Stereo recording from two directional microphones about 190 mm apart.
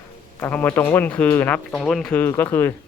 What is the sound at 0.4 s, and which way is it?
Speech, 10° left (ahead or behind).